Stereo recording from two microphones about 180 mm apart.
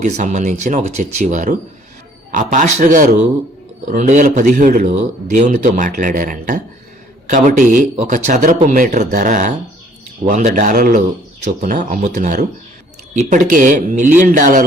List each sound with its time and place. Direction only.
0.0 s a man's voice: 40° right (ahead or behind)